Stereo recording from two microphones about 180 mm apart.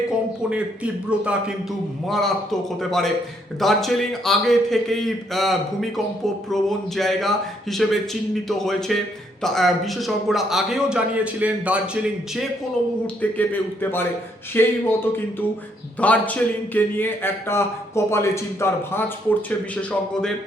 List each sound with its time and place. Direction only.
0.5 s a man's voice: 5° right (ahead or behind)
13.3 s speech: 10° left (ahead or behind)